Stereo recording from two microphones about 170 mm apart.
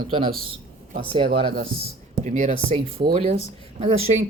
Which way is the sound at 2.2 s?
45° right (ahead or behind).